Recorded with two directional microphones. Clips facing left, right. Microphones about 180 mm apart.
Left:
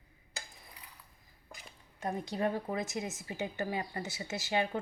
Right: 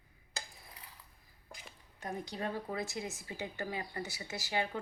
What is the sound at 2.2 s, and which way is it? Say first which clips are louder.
Speech: left 6 dB; 20° left (ahead or behind).